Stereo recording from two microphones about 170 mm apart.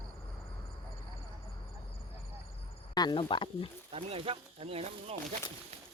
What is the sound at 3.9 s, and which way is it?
Speech, 35° right (ahead or behind).